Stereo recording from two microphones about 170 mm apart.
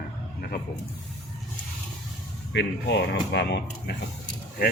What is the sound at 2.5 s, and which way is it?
Speech, 90° left.